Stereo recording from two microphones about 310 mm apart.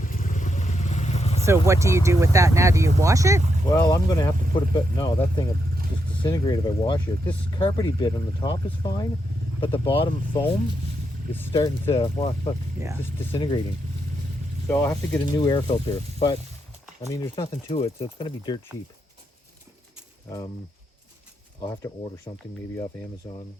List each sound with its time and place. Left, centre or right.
0.0 s vehicle: left
1.5 s speech: centre
3.7 s speech: centre
14.7 s speech: centre
21.6 s speech: centre